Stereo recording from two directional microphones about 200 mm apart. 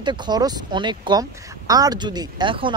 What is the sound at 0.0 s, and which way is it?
Speech, 20° right (ahead or behind).